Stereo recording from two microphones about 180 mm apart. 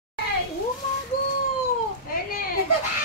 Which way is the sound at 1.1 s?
55° left (ahead or behind).